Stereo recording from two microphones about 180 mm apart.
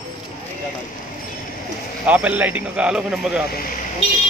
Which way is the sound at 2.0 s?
10° right (ahead or behind).